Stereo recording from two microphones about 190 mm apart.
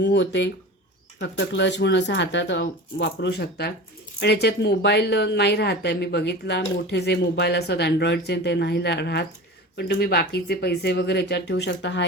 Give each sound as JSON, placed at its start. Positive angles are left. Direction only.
{"t": 0.0, "sound": "a woman's voice", "side_deg": 65}